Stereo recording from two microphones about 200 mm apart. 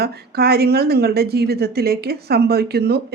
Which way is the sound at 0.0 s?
50° right (ahead or behind).